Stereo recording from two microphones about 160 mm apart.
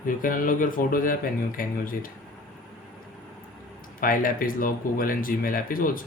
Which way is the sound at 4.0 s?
60° left (ahead or behind).